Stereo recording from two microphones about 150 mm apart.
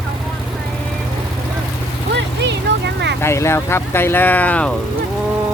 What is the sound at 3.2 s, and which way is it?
Speech, 15° left (ahead or behind).